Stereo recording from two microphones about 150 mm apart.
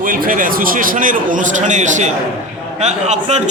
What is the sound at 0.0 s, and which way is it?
A man's voice, 65° right (ahead or behind).